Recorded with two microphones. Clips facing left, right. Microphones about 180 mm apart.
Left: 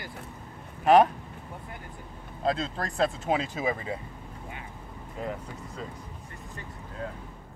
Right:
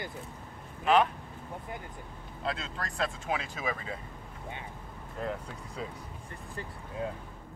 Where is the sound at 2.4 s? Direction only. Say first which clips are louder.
Left 7 dB; 35° left (ahead or behind).